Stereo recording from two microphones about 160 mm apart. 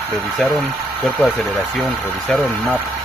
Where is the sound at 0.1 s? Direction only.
5° right (ahead or behind).